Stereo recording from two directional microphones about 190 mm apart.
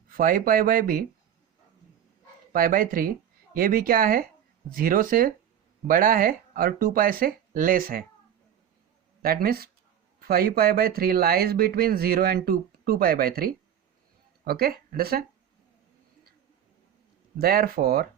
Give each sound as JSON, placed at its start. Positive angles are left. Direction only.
{"t": 0.1, "sound": "speech", "side_deg": -45}
{"t": 2.5, "sound": "speech", "side_deg": -45}
{"t": 9.2, "sound": "speech", "side_deg": -55}
{"t": 17.3, "sound": "speech", "side_deg": -55}